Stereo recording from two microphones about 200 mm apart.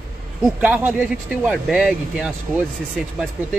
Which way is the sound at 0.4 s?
10° right (ahead or behind).